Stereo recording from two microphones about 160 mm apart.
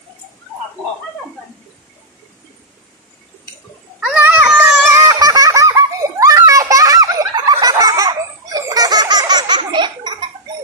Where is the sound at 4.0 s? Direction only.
10° right (ahead or behind).